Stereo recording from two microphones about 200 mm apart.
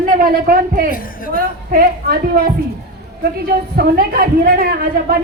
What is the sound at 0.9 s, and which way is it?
Speech, 45° left (ahead or behind).